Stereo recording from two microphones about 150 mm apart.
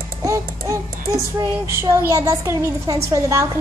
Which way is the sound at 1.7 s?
20° right (ahead or behind).